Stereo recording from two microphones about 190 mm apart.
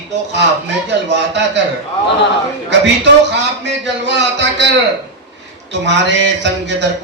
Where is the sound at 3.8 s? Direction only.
70° right (ahead or behind).